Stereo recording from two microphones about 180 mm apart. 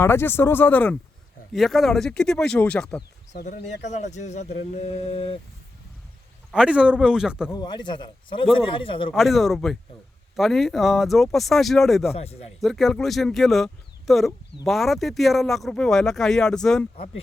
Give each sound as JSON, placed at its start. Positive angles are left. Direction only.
{"t": 0.0, "sound": "speech", "side_deg": 15}
{"t": 3.8, "sound": "speech", "side_deg": 40}
{"t": 6.5, "sound": "speech", "side_deg": -5}
{"t": 7.5, "sound": "a man's voice", "side_deg": 25}
{"t": 9.1, "sound": "speech", "side_deg": 0}
{"t": 12.1, "sound": "speech", "side_deg": 35}
{"t": 12.5, "sound": "speech", "side_deg": 0}